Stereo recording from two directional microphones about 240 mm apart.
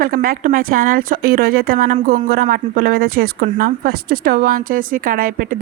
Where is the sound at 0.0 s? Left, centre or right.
Right.